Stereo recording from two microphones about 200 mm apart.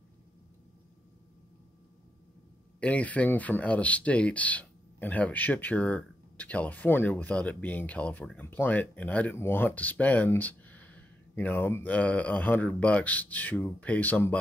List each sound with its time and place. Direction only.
2.8 s speech: 5° left (ahead or behind)